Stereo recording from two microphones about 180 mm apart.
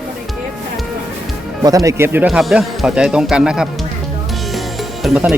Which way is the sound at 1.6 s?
20° right (ahead or behind).